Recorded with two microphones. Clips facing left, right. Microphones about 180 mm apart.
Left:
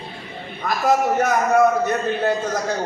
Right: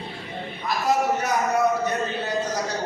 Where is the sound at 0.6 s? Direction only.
50° left (ahead or behind).